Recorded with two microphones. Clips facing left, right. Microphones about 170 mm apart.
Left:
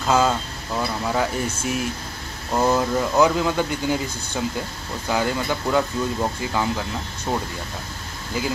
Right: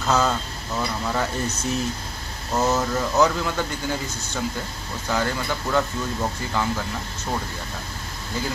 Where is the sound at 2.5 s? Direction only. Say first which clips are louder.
Left 2 dB; 15° left (ahead or behind).